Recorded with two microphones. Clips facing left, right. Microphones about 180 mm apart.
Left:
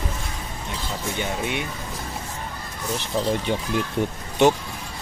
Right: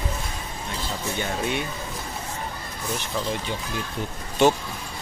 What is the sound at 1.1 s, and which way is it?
Speech, 15° left (ahead or behind).